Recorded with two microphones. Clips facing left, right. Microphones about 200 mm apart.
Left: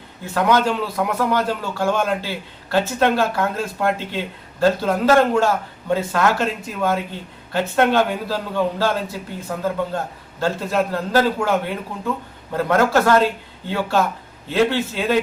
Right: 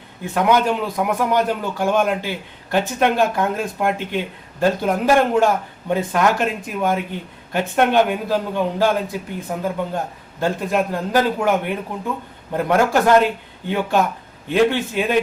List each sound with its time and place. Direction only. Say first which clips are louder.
0.3 s a man's voice: right 1 dB; 15° right (ahead or behind)